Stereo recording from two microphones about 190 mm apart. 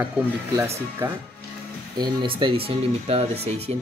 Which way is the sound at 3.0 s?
35° right (ahead or behind).